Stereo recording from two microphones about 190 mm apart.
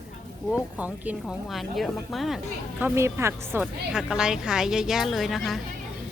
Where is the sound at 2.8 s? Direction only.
15° right (ahead or behind).